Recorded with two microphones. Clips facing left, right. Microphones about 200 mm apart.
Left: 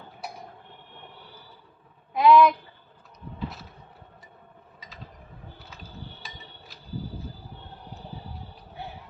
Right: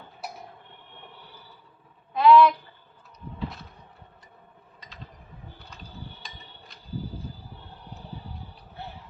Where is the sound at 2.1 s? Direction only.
15° left (ahead or behind).